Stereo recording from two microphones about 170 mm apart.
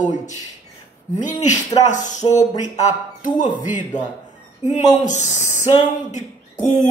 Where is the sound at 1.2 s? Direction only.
45° left (ahead or behind).